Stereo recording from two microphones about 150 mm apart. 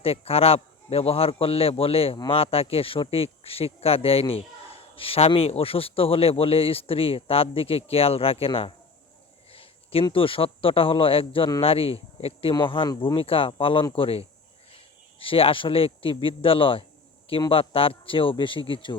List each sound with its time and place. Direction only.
0.0 s speech: 40° left (ahead or behind)